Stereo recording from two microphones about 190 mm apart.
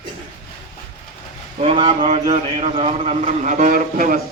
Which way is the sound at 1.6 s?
30° right (ahead or behind).